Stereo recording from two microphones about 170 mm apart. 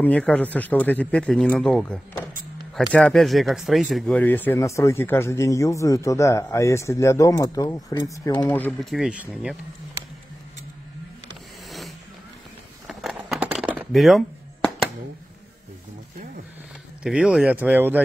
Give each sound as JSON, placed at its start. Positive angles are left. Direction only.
{"t": 0.0, "sound": "speech", "side_deg": 5}
{"t": 8.5, "sound": "speech", "side_deg": 10}
{"t": 8.9, "sound": "speech", "side_deg": -5}
{"t": 12.8, "sound": "a sound", "side_deg": -5}
{"t": 17.0, "sound": "speech", "side_deg": -5}